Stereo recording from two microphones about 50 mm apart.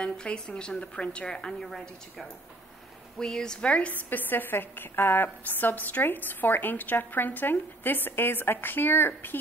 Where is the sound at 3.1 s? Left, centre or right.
Centre.